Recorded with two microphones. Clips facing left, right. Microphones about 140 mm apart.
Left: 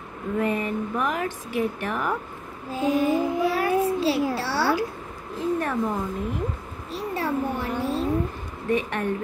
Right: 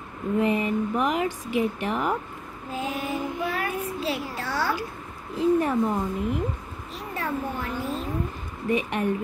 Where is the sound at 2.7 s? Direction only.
35° left (ahead or behind).